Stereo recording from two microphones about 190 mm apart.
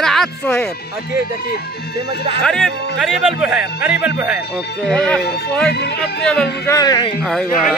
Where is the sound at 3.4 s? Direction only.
10° right (ahead or behind).